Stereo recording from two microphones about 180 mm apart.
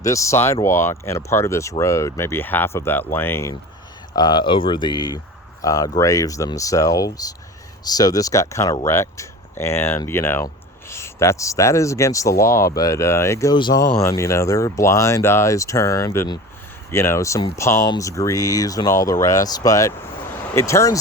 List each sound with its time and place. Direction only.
0.0 s speech: 15° left (ahead or behind)